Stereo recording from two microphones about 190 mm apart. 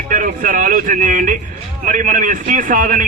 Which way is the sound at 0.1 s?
45° right (ahead or behind).